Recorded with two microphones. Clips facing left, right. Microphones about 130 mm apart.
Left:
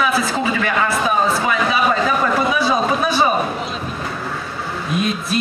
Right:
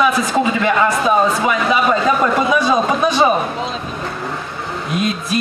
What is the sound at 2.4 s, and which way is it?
Speech, 20° right (ahead or behind).